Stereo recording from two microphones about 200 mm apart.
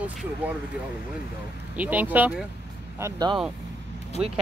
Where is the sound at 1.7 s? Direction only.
10° right (ahead or behind).